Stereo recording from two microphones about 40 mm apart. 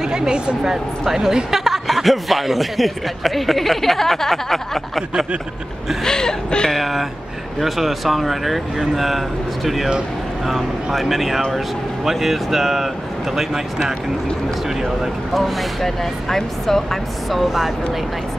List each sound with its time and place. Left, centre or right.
0.0 s speech: centre
6.0 s speech: centre
6.8 s speech: centre
10.4 s speech: centre
15.3 s speech: centre
17.5 s speech: centre